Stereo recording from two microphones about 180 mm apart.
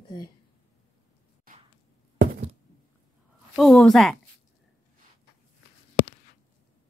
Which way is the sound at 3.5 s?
Centre (ahead or behind).